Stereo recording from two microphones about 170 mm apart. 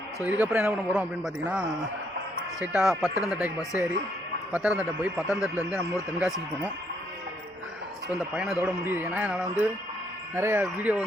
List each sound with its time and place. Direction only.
0.2 s a man's voice: 10° right (ahead or behind)
8.4 s a man's voice: 5° right (ahead or behind)